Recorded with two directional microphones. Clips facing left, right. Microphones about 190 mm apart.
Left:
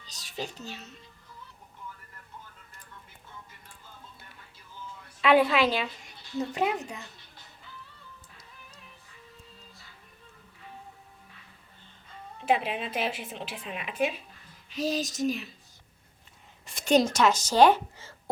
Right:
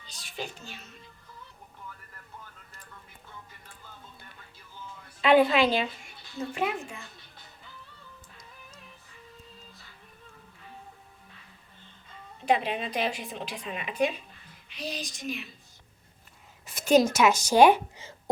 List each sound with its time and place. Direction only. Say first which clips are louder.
0.1 s a child's voice: left 1 dB; 35° left (ahead or behind)
5.2 s speech: right 1 dB; centre (ahead or behind)
6.4 s a woman's voice: left 2 dB; 20° left (ahead or behind)
12.5 s speech: right 1 dB; 5° left (ahead or behind)
14.7 s speech: left 8 dB; 40° left (ahead or behind)
16.6 s speech: right 2 dB; centre (ahead or behind)